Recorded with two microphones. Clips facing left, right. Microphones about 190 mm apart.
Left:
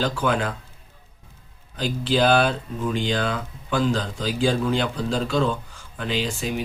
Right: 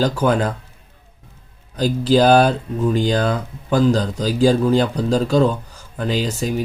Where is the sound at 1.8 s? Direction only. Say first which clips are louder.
Right 6 dB; 40° right (ahead or behind).